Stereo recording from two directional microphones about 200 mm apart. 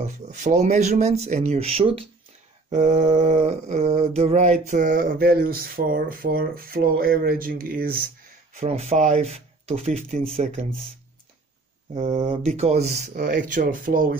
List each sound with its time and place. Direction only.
0.0 s speech: 35° right (ahead or behind)
2.7 s mantra: 35° right (ahead or behind)
8.5 s speech: 35° right (ahead or behind)
11.9 s speech: 35° right (ahead or behind)